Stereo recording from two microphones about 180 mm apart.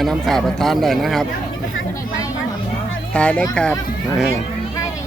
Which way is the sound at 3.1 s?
5° left (ahead or behind).